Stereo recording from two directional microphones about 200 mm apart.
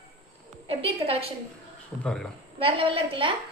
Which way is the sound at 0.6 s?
30° right (ahead or behind).